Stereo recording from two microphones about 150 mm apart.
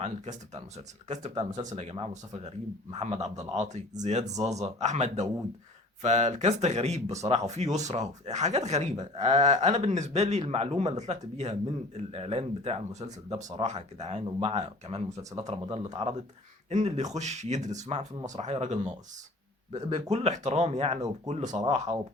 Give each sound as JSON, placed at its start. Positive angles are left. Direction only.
{"t": 0.0, "sound": "speech", "side_deg": -50}
{"t": 15.2, "sound": "speech", "side_deg": -20}
{"t": 15.6, "sound": "speech", "side_deg": -40}